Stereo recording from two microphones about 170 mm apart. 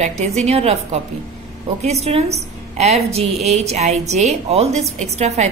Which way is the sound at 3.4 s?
40° right (ahead or behind).